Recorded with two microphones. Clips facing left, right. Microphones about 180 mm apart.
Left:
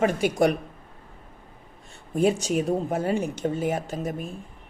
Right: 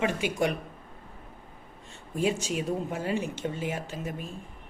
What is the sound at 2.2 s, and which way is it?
Speech, 45° left (ahead or behind).